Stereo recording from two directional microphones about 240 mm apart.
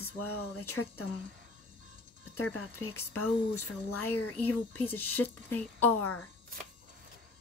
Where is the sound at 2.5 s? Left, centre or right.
Left.